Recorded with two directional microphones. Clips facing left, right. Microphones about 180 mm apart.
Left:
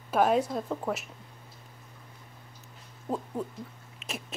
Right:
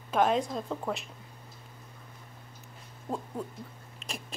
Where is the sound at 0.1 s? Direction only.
5° left (ahead or behind).